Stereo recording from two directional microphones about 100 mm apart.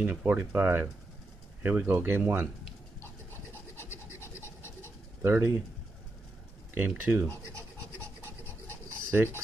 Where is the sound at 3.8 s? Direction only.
25° left (ahead or behind).